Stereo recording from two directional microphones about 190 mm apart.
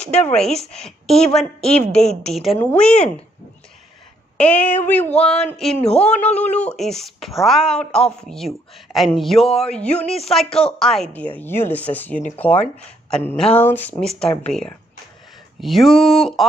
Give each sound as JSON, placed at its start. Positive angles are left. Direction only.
{"t": 0.0, "sound": "a woman's voice", "side_deg": 5}
{"t": 4.4, "sound": "a woman's voice", "side_deg": 10}
{"t": 10.0, "sound": "speech", "side_deg": 30}
{"t": 10.3, "sound": "a woman's voice", "side_deg": 5}